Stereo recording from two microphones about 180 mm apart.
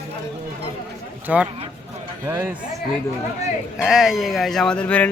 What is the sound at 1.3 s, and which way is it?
Speech, 5° right (ahead or behind).